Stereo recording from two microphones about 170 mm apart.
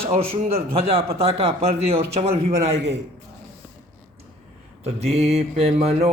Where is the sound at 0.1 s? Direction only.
40° right (ahead or behind).